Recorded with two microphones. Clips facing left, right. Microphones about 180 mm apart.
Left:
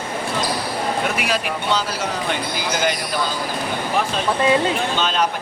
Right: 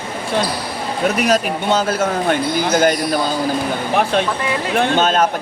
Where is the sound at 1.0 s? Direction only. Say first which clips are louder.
Right 6 dB; 40° right (ahead or behind).